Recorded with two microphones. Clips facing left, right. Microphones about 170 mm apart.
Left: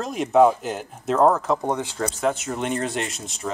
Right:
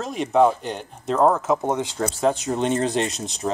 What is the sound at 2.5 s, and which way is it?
Speech, 25° right (ahead or behind).